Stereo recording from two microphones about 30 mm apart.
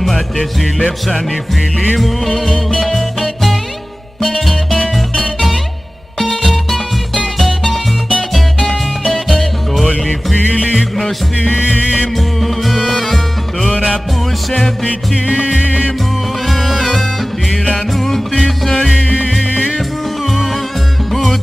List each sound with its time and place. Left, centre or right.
0.0 s music: centre
2.0 s music: centre
12.2 s music: centre
16.4 s music: centre
17.9 s music: centre
19.0 s music: left
20.2 s music: centre